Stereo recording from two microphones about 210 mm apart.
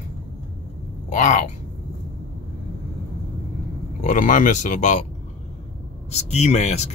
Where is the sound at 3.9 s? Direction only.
35° left (ahead or behind).